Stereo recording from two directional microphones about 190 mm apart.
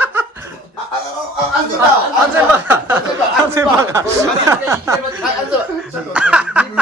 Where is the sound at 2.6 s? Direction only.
10° right (ahead or behind).